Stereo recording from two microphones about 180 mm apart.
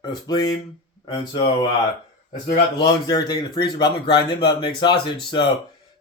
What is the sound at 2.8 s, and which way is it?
Speech, 20° left (ahead or behind).